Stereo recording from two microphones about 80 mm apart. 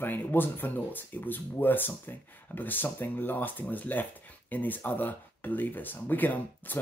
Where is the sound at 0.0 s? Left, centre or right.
Left.